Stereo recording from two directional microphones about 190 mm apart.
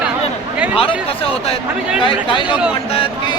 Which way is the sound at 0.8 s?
30° left (ahead or behind).